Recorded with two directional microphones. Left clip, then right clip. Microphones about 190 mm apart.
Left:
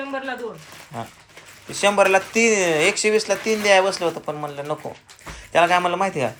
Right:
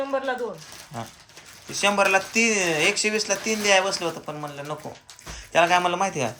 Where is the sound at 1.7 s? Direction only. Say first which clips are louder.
Left 4 dB; 15° right (ahead or behind).